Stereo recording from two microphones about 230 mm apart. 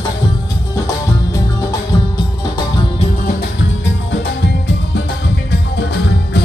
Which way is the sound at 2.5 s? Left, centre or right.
Centre.